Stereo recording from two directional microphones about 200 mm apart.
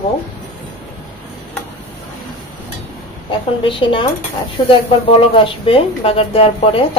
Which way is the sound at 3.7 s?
25° left (ahead or behind).